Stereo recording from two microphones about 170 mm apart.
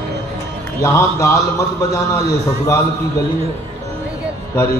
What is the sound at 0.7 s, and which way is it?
A man's voice, 15° left (ahead or behind).